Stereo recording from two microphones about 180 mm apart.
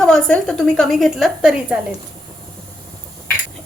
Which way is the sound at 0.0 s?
5° left (ahead or behind).